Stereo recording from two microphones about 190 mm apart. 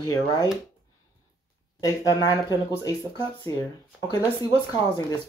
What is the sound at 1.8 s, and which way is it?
Speech, 20° left (ahead or behind).